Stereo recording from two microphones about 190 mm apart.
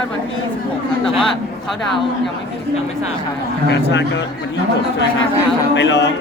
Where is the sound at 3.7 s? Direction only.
65° left (ahead or behind).